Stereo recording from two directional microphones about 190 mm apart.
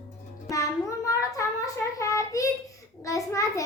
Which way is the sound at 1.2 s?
15° left (ahead or behind).